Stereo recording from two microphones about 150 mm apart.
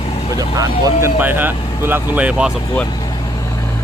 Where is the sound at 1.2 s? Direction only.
10° right (ahead or behind).